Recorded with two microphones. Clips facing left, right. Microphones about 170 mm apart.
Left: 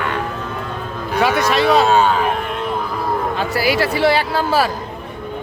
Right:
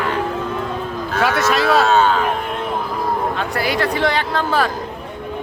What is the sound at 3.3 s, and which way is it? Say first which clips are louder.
Speech: left 2 dB; 5° left (ahead or behind).